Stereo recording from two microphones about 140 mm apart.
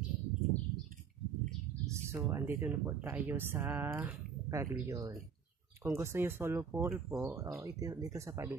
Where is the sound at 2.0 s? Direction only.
20° right (ahead or behind).